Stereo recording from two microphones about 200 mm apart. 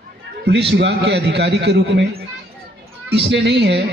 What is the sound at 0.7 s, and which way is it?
A man's voice, 60° right (ahead or behind).